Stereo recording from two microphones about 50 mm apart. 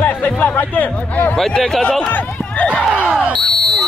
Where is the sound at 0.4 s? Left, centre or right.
Left.